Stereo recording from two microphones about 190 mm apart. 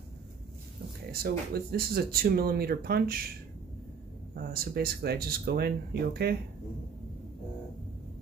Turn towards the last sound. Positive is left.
turn(degrees=-55)  # may be behind; listen again after turning